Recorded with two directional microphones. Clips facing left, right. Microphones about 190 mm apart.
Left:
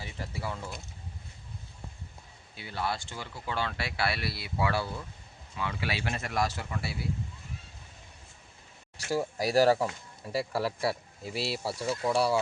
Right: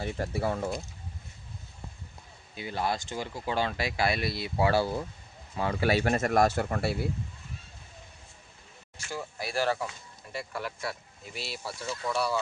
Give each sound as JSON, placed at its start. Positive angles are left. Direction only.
{"t": 0.0, "sound": "speech", "side_deg": -55}
{"t": 2.6, "sound": "speech", "side_deg": -15}
{"t": 9.0, "sound": "speech", "side_deg": 35}